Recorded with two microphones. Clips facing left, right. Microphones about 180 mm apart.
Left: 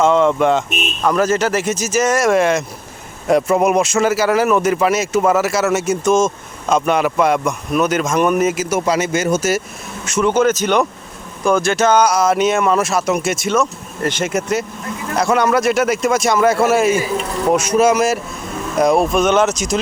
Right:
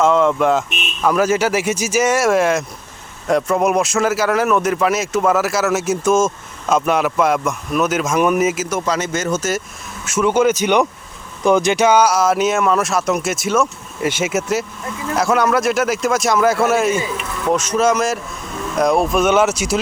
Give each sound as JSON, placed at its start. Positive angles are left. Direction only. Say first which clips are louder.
{"t": 0.0, "sound": "a man's voice", "louder": "left 1 dB", "side_deg": 0}
{"t": 8.7, "sound": "speech", "louder": "left 3 dB", "side_deg": 10}
{"t": 10.1, "sound": "a man's voice", "louder": "even", "side_deg": -10}
{"t": 17.2, "sound": "speech", "louder": "left 4 dB", "side_deg": 35}
{"t": 17.5, "sound": "speech", "louder": "left 2 dB", "side_deg": 10}